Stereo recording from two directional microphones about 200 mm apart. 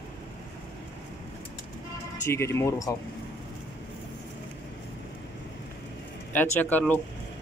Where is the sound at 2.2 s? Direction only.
15° left (ahead or behind).